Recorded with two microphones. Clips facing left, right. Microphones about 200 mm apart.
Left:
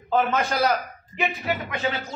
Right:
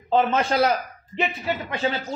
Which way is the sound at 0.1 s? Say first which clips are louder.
Right 2 dB; 25° right (ahead or behind).